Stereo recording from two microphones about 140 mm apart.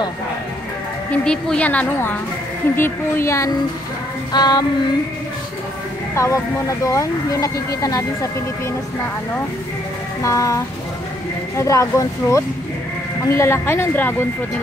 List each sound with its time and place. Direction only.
1.1 s a woman's voice: 5° left (ahead or behind); by 4.6 s 30° left (ahead or behind)
6.1 s speech: 20° left (ahead or behind)
10.2 s a woman's voice: 20° left (ahead or behind)